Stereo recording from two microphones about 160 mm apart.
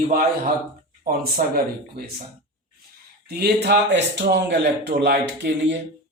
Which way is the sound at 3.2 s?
85° right.